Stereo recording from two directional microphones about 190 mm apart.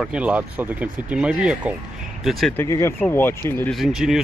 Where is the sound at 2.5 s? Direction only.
15° left (ahead or behind).